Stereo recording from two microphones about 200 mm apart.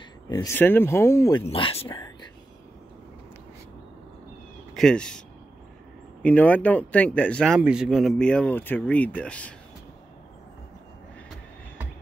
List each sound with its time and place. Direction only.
0.3 s speech: 15° left (ahead or behind)
1.4 s speech: 30° left (ahead or behind)
4.7 s speech: 5° left (ahead or behind)
6.2 s speech: 5° left (ahead or behind)